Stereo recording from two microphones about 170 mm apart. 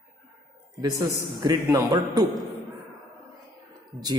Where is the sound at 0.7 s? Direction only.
20° right (ahead or behind).